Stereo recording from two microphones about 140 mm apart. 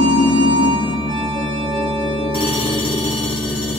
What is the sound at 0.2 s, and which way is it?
Music, 35° right (ahead or behind).